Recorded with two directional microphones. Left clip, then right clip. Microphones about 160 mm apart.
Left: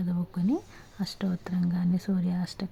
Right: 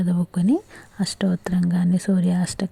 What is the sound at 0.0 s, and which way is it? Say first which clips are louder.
Speech: right 8 dB; 35° right (ahead or behind).